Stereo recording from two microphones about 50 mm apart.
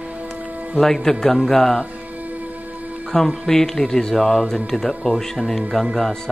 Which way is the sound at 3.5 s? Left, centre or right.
Centre.